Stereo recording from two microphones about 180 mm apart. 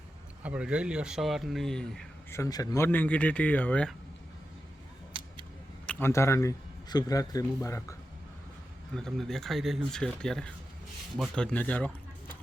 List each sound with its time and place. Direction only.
0.4 s speech: 5° right (ahead or behind)
2.3 s speech: 20° left (ahead or behind)
5.8 s a man's voice: 10° left (ahead or behind)
9.0 s speech: centre (ahead or behind)